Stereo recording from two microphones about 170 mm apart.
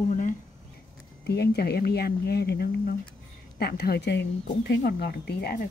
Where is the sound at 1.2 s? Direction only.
75° left (ahead or behind).